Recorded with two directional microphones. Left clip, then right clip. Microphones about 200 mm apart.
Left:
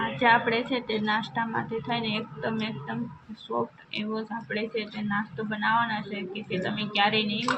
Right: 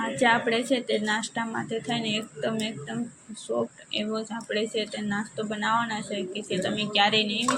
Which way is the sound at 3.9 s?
10° right (ahead or behind).